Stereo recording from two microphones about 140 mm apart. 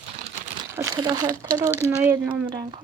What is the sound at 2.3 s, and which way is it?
Speech, 35° right (ahead or behind).